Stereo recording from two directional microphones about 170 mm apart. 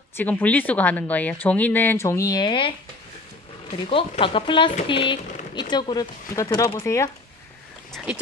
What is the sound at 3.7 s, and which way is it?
A woman's voice, 30° left (ahead or behind).